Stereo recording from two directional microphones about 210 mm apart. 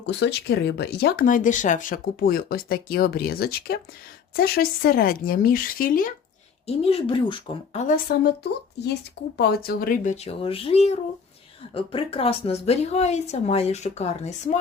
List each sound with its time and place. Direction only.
0.0 s speech: 55° left (ahead or behind)
6.7 s a woman's voice: 25° left (ahead or behind)
9.4 s speech: 50° left (ahead or behind); by 14.6 s 35° left (ahead or behind)